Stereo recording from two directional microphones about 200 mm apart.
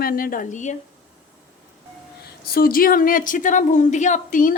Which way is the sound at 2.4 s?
50° left (ahead or behind).